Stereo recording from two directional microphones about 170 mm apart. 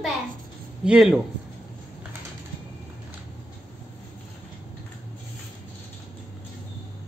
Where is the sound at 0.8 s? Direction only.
5° right (ahead or behind).